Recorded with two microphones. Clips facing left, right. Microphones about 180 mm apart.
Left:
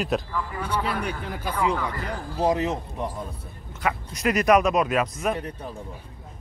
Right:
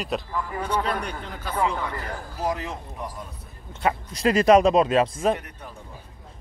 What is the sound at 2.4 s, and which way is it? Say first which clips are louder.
Speech: left 6 dB; 25° left (ahead or behind).